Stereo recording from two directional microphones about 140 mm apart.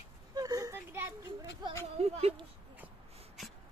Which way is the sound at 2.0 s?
50° right (ahead or behind).